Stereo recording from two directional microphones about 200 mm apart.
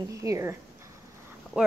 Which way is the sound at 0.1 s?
15° right (ahead or behind).